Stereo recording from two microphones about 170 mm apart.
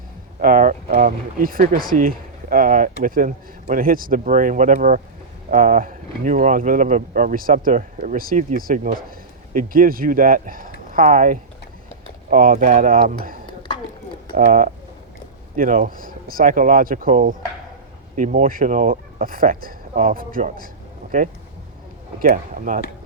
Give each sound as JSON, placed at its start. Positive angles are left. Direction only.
{"t": 0.3, "sound": "speech", "side_deg": -55}